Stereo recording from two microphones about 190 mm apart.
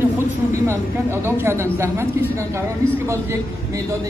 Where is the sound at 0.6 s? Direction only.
15° right (ahead or behind).